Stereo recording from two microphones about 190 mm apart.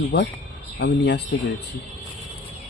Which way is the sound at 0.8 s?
60° left (ahead or behind).